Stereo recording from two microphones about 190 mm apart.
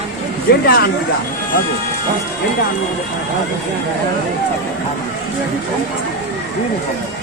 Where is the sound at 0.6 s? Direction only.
50° left (ahead or behind).